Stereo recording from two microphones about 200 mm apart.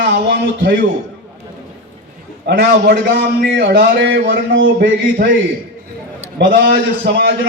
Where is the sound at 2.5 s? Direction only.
60° right (ahead or behind).